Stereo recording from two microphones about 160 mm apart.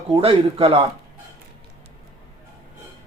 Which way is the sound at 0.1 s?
35° right (ahead or behind).